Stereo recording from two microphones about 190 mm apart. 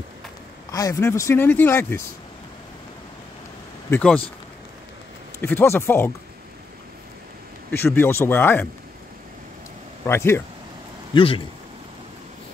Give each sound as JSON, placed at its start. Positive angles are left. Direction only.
{"t": 0.7, "sound": "speech", "side_deg": 15}
{"t": 3.9, "sound": "speech", "side_deg": 5}
{"t": 5.4, "sound": "speech", "side_deg": 10}
{"t": 7.7, "sound": "speech", "side_deg": 10}
{"t": 10.0, "sound": "speech", "side_deg": 15}
{"t": 11.1, "sound": "speech", "side_deg": 25}